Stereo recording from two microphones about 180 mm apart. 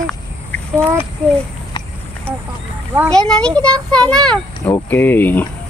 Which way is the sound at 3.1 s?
5° left (ahead or behind).